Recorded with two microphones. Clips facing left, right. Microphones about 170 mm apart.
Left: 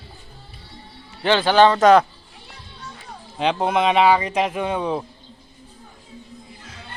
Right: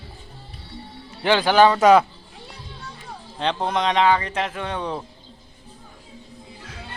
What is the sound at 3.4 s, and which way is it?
Speech, 10° left (ahead or behind).